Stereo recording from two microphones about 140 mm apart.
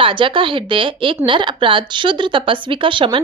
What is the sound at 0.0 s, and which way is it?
Speech, 40° right (ahead or behind).